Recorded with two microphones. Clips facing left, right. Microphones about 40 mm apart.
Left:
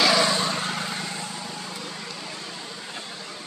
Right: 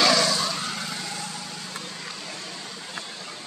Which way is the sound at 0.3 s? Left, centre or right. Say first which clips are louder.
Left 2 dB; left.